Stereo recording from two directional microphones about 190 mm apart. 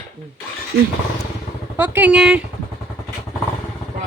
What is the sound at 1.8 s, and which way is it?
Speech, 10° right (ahead or behind).